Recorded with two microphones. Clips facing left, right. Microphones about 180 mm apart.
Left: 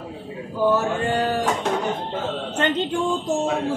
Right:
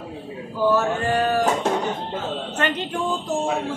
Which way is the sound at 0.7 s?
25° left (ahead or behind).